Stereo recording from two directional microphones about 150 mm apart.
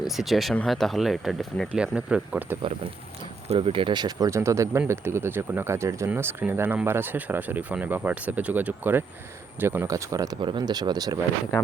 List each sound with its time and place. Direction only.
0.2 s speech: centre (ahead or behind)
3.5 s speech: 35° right (ahead or behind)